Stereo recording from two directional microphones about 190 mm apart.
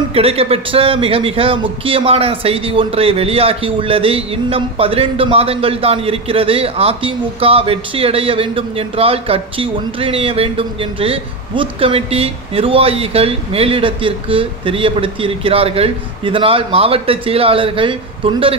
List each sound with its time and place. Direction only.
0.1 s a man's voice: 30° right (ahead or behind)